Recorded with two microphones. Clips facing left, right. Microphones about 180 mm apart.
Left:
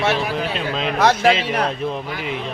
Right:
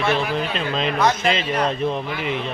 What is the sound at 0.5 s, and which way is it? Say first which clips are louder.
Speech: even; 5° left (ahead or behind).